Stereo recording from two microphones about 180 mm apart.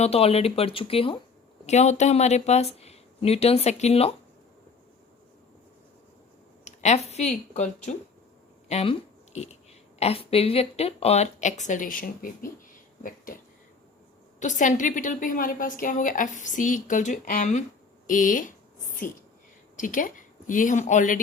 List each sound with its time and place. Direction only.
0.0 s speech: 35° left (ahead or behind)
6.7 s speech: 40° left (ahead or behind)
13.0 s a sound: 50° left (ahead or behind)
14.3 s a woman's voice: 45° left (ahead or behind)
19.7 s a woman's voice: 50° left (ahead or behind)